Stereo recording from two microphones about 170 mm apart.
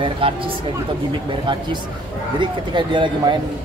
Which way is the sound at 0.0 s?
30° right (ahead or behind).